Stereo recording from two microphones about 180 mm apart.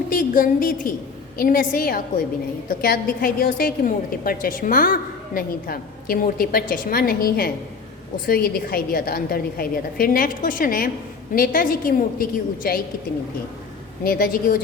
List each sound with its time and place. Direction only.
0.1 s a woman's voice: 50° left (ahead or behind)
14.0 s a woman's voice: 55° left (ahead or behind)